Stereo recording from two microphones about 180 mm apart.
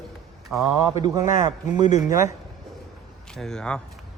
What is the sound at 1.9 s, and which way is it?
Speech, 40° left (ahead or behind).